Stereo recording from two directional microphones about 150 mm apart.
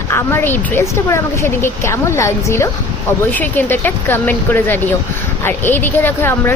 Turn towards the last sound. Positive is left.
turn(degrees=15)  # may be behind; listen again after turning